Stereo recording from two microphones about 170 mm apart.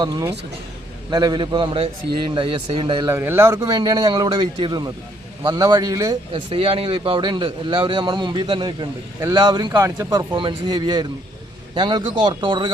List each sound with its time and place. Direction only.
0.0 s a man's voice: 20° right (ahead or behind)
3.1 s a man's voice: 15° right (ahead or behind)
6.5 s a man's voice: 35° right (ahead or behind); by 10.2 s 20° right (ahead or behind)
10.3 s a man's voice: 30° right (ahead or behind)